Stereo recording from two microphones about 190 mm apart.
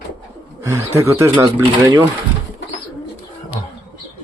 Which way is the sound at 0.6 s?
15° right (ahead or behind).